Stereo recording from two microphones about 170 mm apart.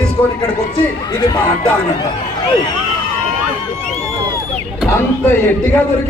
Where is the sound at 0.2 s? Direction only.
25° left (ahead or behind).